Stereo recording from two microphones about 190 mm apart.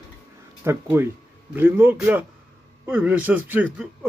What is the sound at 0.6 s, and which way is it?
Speech, 10° right (ahead or behind).